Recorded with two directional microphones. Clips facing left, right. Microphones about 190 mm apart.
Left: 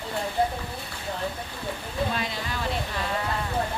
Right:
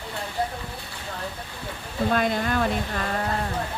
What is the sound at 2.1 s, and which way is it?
Speech, 50° right (ahead or behind).